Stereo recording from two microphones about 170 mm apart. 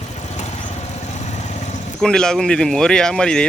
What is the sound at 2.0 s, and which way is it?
Speech, 5° left (ahead or behind).